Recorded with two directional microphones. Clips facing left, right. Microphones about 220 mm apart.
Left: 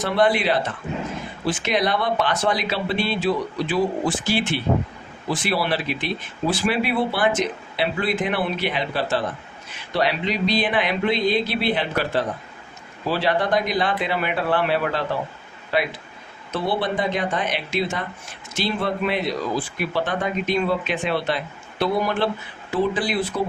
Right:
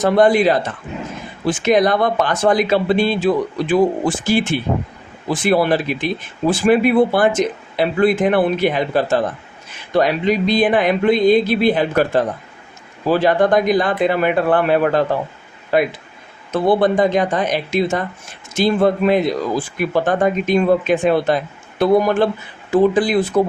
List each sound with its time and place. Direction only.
0.0 s speech: 45° right (ahead or behind)